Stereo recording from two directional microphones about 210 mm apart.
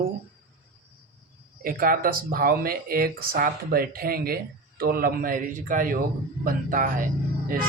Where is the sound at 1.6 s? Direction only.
45° right (ahead or behind).